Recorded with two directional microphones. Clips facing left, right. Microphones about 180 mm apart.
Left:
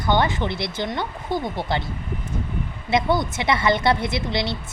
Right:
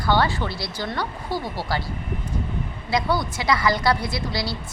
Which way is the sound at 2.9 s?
25° left (ahead or behind).